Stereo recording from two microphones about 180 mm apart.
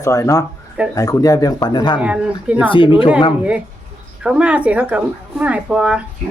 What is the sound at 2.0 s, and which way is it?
Speech, 5° right (ahead or behind).